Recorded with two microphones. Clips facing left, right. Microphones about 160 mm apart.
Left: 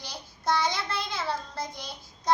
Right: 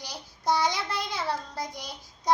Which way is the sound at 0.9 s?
15° right (ahead or behind).